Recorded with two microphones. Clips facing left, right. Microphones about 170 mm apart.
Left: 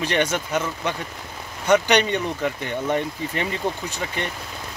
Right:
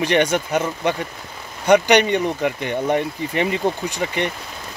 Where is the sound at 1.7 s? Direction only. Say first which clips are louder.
Right 4 dB; 15° right (ahead or behind).